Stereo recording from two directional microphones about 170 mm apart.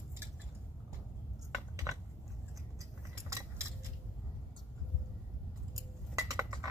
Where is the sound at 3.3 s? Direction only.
15° right (ahead or behind).